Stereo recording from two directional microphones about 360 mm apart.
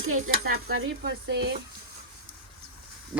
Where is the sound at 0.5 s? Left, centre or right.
Right.